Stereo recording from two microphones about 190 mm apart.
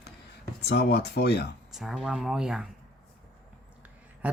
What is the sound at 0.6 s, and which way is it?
Speech, 60° left (ahead or behind).